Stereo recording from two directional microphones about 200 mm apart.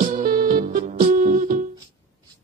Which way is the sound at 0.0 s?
40° right (ahead or behind).